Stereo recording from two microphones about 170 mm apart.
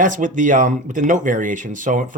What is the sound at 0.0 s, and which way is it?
Speech, 50° right (ahead or behind).